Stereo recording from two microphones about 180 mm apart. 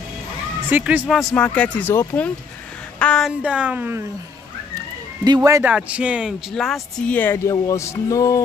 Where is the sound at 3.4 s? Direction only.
5° right (ahead or behind).